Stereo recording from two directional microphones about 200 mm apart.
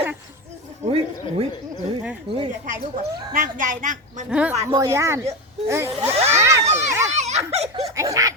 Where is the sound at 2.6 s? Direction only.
40° right (ahead or behind).